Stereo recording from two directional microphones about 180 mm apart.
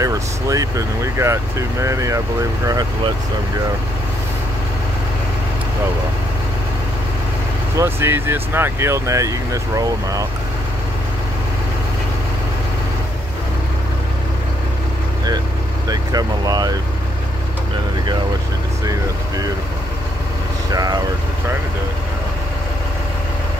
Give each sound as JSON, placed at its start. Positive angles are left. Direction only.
{"t": 0.0, "sound": "speech", "side_deg": -20}
{"t": 7.7, "sound": "speech", "side_deg": -15}
{"t": 15.9, "sound": "speech", "side_deg": -20}
{"t": 18.9, "sound": "speech", "side_deg": -20}
{"t": 20.7, "sound": "speech", "side_deg": -20}